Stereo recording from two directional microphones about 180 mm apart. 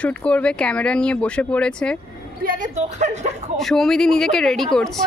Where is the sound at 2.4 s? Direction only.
50° right (ahead or behind).